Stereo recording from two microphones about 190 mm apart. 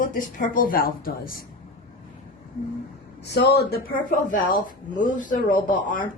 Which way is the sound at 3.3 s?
60° left (ahead or behind).